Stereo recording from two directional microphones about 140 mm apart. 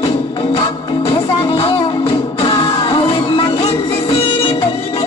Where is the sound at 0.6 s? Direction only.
40° left (ahead or behind).